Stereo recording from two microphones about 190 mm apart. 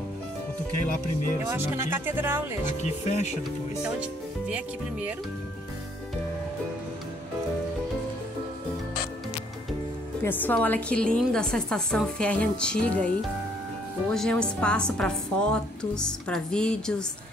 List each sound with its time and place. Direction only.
1.5 s speech: 10° right (ahead or behind)
2.8 s speech: 35° left (ahead or behind)
3.8 s speech: 5° right (ahead or behind)
10.2 s a woman's voice: 10° left (ahead or behind)
14.1 s a woman's voice: 5° left (ahead or behind)